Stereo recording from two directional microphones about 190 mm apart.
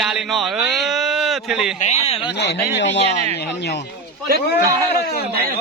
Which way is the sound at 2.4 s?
65° left (ahead or behind).